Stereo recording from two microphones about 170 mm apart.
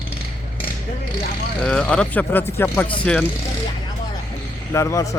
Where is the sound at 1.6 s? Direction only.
5° left (ahead or behind).